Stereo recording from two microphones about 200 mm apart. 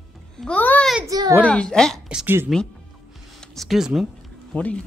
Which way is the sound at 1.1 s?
20° right (ahead or behind).